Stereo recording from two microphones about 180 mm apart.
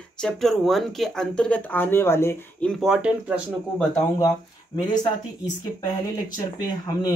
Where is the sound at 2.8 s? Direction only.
5° right (ahead or behind).